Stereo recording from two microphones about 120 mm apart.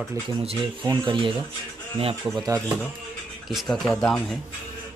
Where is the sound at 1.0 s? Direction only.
45° right (ahead or behind).